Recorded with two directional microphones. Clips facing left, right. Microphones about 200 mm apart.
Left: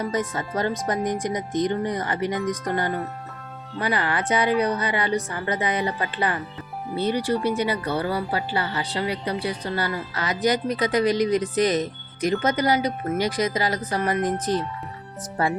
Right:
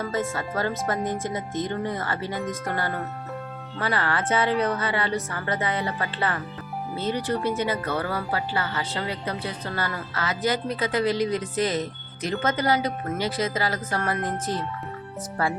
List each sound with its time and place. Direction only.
0.0 s speech: 15° left (ahead or behind)